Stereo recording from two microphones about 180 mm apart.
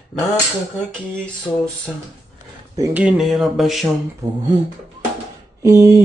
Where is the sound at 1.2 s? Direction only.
5° left (ahead or behind).